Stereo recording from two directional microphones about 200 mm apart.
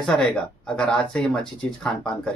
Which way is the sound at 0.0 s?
5° left (ahead or behind).